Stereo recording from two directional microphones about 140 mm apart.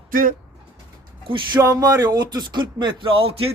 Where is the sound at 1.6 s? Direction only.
25° right (ahead or behind); by 3.3 s 40° right (ahead or behind).